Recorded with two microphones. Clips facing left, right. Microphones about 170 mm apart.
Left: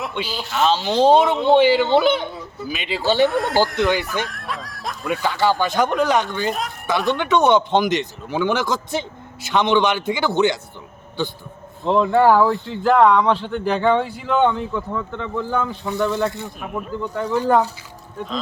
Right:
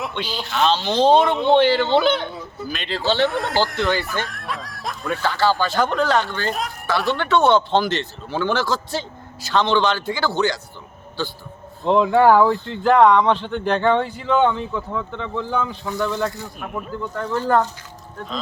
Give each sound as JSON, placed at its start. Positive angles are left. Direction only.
{"t": 0.0, "sound": "speech", "side_deg": 5}
{"t": 3.2, "sound": "speech", "side_deg": 0}
{"t": 6.5, "sound": "speech", "side_deg": 0}
{"t": 7.2, "sound": "speech", "side_deg": 15}
{"t": 11.9, "sound": "speech", "side_deg": 0}
{"t": 17.0, "sound": "speech", "side_deg": 10}